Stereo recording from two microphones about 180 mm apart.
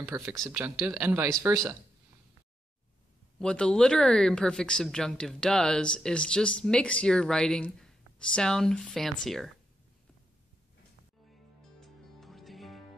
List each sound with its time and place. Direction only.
0.0 s speech: 15° right (ahead or behind)
3.3 s speech: 5° left (ahead or behind)
11.8 s music: centre (ahead or behind)